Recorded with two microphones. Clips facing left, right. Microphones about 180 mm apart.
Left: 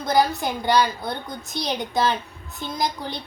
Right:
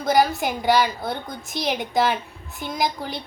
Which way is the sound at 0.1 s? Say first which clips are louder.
Right 1 dB; 15° right (ahead or behind).